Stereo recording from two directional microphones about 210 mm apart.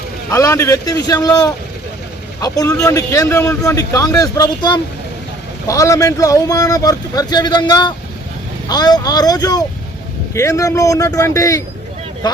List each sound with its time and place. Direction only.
0.3 s speech: 15° left (ahead or behind)